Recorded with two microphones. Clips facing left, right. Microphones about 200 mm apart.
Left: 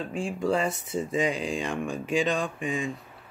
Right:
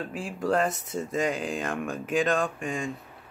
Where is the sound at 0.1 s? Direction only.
5° right (ahead or behind).